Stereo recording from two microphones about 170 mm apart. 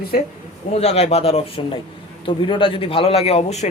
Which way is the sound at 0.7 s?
40° left (ahead or behind).